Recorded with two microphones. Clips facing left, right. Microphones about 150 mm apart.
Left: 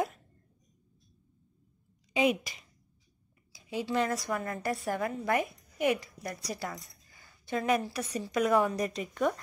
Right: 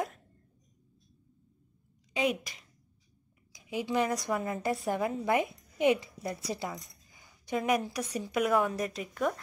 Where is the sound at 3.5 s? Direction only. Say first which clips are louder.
Even; 15° right (ahead or behind).